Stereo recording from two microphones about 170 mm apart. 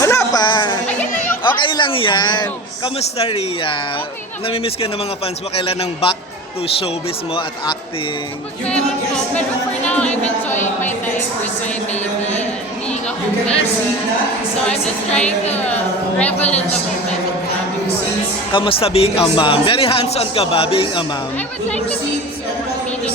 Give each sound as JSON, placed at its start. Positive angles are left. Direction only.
{"t": 0.0, "sound": "a sound", "side_deg": 15}
{"t": 1.5, "sound": "a man's voice", "side_deg": 25}
{"t": 7.3, "sound": "a man's voice", "side_deg": 30}
{"t": 9.8, "sound": "a woman's voice", "side_deg": 5}
{"t": 14.6, "sound": "a woman's voice", "side_deg": 5}
{"t": 18.5, "sound": "speech", "side_deg": 30}
{"t": 21.3, "sound": "speech", "side_deg": 10}